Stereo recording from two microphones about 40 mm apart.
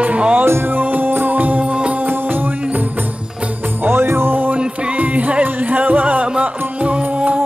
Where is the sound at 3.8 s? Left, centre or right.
Right.